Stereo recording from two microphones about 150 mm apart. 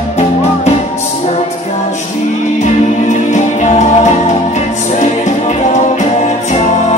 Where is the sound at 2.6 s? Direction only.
55° left (ahead or behind).